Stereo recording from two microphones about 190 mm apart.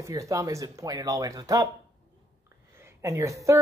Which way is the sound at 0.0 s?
15° right (ahead or behind).